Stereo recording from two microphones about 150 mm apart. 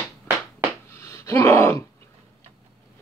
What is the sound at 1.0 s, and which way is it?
Groan, 20° left (ahead or behind).